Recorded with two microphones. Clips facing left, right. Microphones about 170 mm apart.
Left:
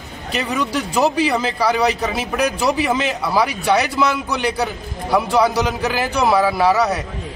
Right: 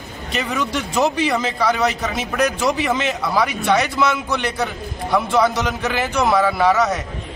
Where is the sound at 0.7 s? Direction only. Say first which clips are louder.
Left 1 dB; 35° left (ahead or behind).